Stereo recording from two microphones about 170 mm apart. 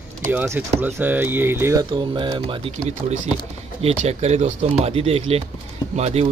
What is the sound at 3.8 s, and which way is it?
Speech, 40° right (ahead or behind).